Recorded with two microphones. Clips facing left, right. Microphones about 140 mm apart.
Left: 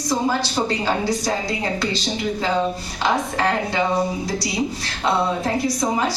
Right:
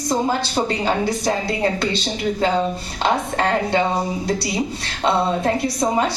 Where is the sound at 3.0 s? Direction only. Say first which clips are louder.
Right 1 dB; 55° right (ahead or behind).